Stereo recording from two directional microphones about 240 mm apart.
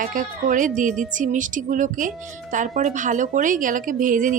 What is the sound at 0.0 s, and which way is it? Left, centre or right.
A woman's voice, right.